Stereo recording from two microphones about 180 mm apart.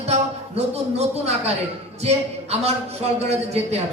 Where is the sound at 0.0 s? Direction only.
35° right (ahead or behind).